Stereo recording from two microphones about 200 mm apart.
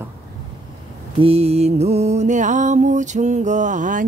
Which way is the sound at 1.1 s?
30° right (ahead or behind).